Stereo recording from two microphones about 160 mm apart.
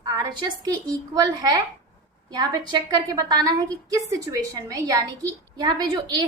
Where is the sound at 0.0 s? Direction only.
25° right (ahead or behind).